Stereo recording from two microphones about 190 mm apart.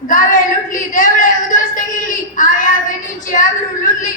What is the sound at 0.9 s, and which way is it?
A woman's voice, 45° left (ahead or behind).